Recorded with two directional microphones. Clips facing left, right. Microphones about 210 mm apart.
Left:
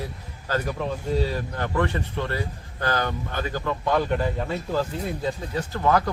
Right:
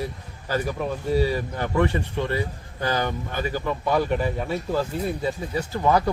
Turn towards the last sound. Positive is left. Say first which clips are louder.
# right 1 dB
turn(degrees=-10)  # may be behind; listen again after turning